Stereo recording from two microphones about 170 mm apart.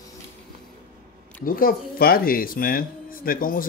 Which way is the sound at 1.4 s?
55° left (ahead or behind).